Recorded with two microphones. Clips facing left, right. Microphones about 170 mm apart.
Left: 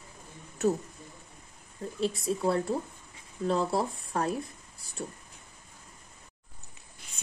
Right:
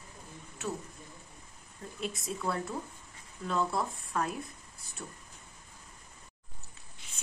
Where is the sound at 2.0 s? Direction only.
30° left (ahead or behind).